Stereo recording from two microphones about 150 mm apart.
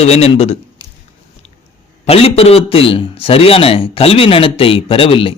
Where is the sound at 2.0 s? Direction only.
40° left (ahead or behind).